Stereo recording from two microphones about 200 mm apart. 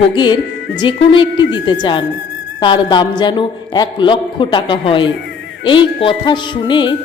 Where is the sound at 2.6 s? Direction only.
25° left (ahead or behind).